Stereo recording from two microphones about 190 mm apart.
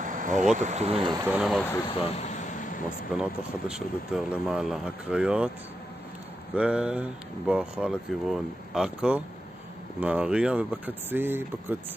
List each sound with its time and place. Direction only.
0.0 s insect: 45° right (ahead or behind)
0.6 s speech: 35° right (ahead or behind)
1.0 s speech: 20° right (ahead or behind)
1.3 s speech: centre (ahead or behind)
1.6 s speech: 10° left (ahead or behind)
1.9 s a sound: 35° left (ahead or behind)
3.2 s speech: 5° right (ahead or behind)
6.5 s speech: 5° right (ahead or behind)